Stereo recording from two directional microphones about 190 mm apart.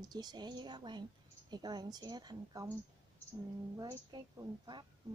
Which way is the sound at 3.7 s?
20° right (ahead or behind).